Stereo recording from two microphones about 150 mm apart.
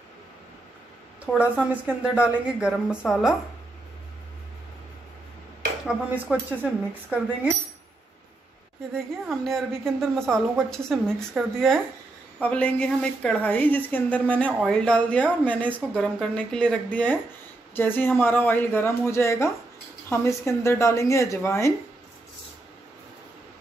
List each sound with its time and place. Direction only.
1.2 s a woman's voice: 10° right (ahead or behind)
6.6 s a woman's voice: 10° right (ahead or behind)
8.9 s a woman's voice: centre (ahead or behind); by 21.7 s 20° left (ahead or behind)